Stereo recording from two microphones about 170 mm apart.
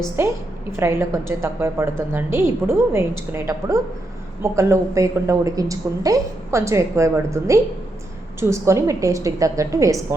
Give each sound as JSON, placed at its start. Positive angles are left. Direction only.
{"t": 0.2, "sound": "a woman's voice", "side_deg": -15}